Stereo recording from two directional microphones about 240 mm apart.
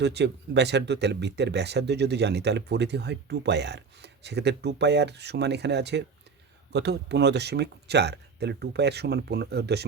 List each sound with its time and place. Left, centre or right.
0.0 s speech: right